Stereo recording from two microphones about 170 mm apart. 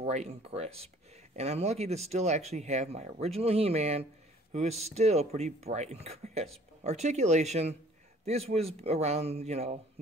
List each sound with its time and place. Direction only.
0.0 s speech: 40° right (ahead or behind)